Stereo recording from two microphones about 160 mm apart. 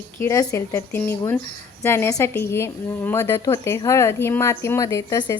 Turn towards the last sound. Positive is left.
turn(degrees=25)  # may be behind; listen again after turning